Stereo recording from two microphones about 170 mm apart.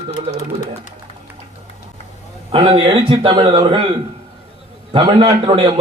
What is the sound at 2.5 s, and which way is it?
A man's voice, 35° right (ahead or behind).